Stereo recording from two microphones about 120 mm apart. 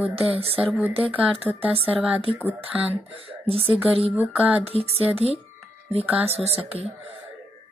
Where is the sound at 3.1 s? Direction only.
55° right (ahead or behind).